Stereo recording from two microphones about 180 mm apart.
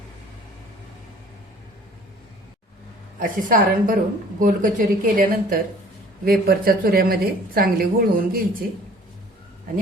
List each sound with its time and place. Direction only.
3.2 s a woman's voice: 50° right (ahead or behind)